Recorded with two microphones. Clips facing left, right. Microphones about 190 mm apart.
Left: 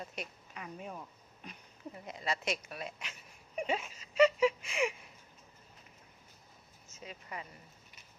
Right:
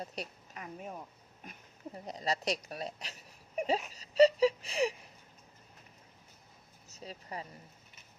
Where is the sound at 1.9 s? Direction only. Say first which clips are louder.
Right 3 dB; 35° right (ahead or behind).